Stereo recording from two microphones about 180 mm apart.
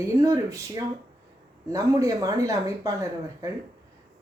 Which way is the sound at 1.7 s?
15° right (ahead or behind).